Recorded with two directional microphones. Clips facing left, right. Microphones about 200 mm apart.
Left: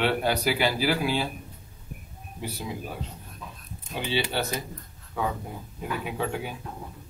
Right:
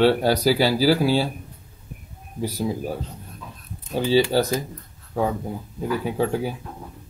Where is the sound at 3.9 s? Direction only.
40° right (ahead or behind).